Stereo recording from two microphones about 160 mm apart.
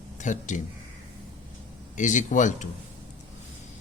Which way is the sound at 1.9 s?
50° left (ahead or behind).